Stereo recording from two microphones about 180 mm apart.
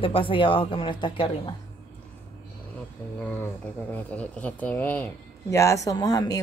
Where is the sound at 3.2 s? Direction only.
10° left (ahead or behind).